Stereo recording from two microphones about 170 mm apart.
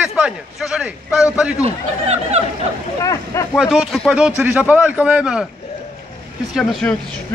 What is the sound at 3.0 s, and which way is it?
Speech, 20° left (ahead or behind).